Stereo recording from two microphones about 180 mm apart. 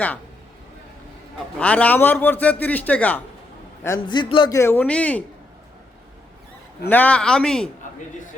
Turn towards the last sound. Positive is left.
turn(degrees=5)  # may be behind; listen again after turning